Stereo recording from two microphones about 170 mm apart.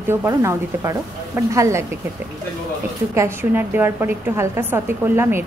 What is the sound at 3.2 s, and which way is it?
A woman's voice, 15° right (ahead or behind).